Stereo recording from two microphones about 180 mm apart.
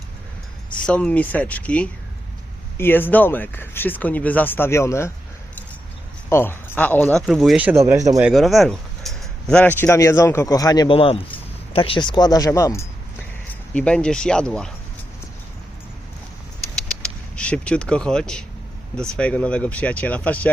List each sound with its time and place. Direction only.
0.8 s speech: 5° left (ahead or behind)
6.2 s speech: 10° left (ahead or behind); by 7.9 s 10° right (ahead or behind)
8.2 s speech: centre (ahead or behind); by 12.9 s 15° left (ahead or behind)
13.5 s speech: 5° left (ahead or behind)
16.7 s a sound: 5° left (ahead or behind)
18.9 s speech: 5° left (ahead or behind)